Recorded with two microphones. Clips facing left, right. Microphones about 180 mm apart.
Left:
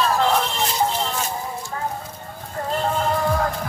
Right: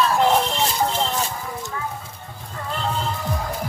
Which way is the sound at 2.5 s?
45° left (ahead or behind).